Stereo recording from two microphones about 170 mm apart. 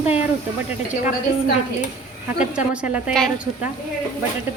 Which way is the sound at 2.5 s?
5° right (ahead or behind).